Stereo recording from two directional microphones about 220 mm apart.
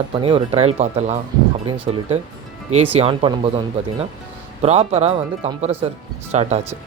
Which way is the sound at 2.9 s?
25° right (ahead or behind).